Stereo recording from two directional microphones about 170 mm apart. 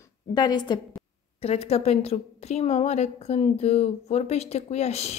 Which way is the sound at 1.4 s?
35° left (ahead or behind).